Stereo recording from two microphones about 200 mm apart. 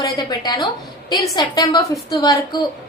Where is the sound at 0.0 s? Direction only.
20° left (ahead or behind).